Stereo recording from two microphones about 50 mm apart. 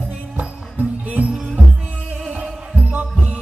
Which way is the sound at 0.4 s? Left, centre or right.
Right.